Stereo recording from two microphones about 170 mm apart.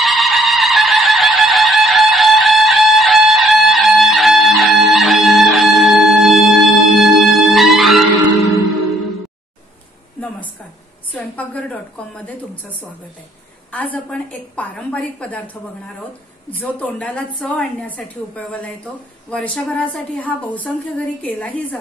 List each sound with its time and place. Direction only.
0.0 s fowl: centre (ahead or behind)
11.1 s a sound: 10° left (ahead or behind)
13.7 s a woman's voice: 10° left (ahead or behind)